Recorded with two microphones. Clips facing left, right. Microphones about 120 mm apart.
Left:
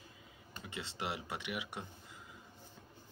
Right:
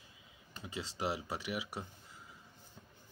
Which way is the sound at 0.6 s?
35° right (ahead or behind).